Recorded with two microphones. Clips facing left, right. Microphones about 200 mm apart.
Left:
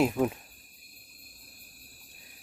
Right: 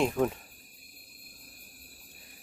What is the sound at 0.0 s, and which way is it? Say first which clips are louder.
Speech: left 1 dB; 5° left (ahead or behind).